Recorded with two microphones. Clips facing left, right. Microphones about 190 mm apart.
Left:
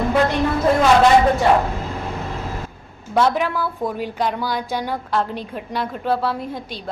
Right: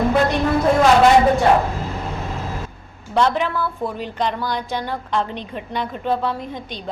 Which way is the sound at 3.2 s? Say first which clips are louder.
Even; 10° left (ahead or behind).